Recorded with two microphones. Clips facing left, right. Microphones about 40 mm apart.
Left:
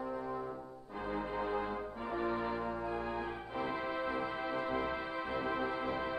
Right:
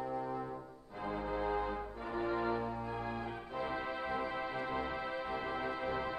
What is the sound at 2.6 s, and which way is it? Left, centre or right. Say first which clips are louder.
Music: left 2 dB; centre.